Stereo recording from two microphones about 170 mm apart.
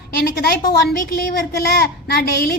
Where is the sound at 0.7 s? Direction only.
65° left (ahead or behind).